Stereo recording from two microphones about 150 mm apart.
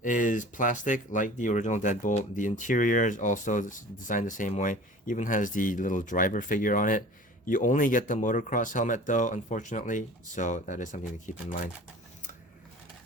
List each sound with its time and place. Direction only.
0.0 s speech: 60° left (ahead or behind)